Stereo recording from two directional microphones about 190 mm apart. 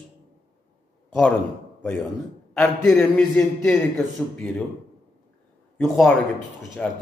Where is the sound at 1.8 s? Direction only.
5° left (ahead or behind).